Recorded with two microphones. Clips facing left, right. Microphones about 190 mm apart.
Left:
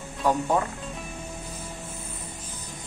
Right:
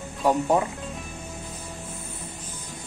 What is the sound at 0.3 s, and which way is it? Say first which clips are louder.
Speech: right 2 dB; 20° right (ahead or behind).